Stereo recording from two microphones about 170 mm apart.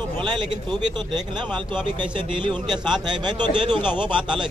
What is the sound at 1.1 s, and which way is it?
A man's voice, 25° right (ahead or behind).